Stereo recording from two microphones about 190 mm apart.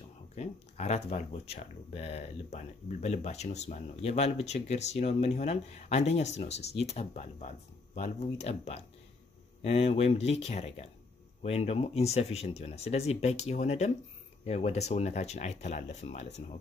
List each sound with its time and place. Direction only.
0.4 s speech: 35° left (ahead or behind)